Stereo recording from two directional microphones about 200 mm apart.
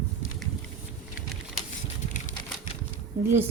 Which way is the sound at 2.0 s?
40° left (ahead or behind).